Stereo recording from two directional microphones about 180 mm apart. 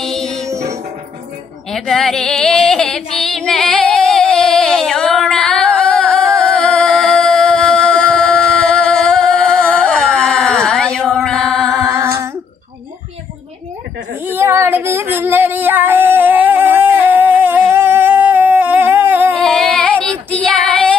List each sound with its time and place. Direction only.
0.0 s music: 5° left (ahead or behind)
0.5 s music: 15° right (ahead or behind)
1.7 s female singing: centre (ahead or behind)
11.7 s a sound: 15° right (ahead or behind)
14.3 s female singing: 15° right (ahead or behind)
19.4 s female singing: 5° left (ahead or behind)